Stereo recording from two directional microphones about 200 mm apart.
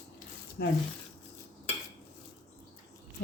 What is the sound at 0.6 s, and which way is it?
Speech, 55° left (ahead or behind).